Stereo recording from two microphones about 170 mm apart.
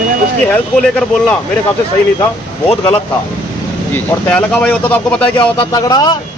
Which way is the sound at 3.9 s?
10° left (ahead or behind).